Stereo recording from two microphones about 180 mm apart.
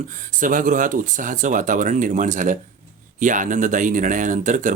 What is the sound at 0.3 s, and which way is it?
Speech, 45° right (ahead or behind).